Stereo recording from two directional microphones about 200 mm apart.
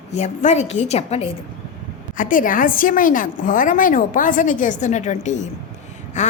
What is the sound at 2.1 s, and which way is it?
A woman's voice, 40° left (ahead or behind).